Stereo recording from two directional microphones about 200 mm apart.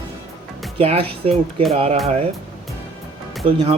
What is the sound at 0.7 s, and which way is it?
Speech, 30° right (ahead or behind).